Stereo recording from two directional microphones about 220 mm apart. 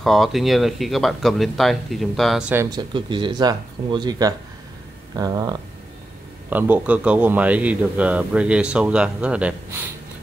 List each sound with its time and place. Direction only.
0.0 s speech: centre (ahead or behind); by 5.6 s 15° right (ahead or behind)
6.5 s speech: 5° right (ahead or behind)